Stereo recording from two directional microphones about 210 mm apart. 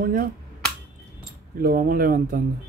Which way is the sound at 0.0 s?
40° right (ahead or behind).